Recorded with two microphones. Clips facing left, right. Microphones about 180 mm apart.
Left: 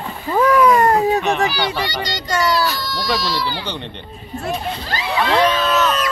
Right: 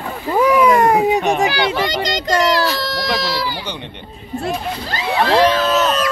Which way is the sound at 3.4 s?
10° right (ahead or behind).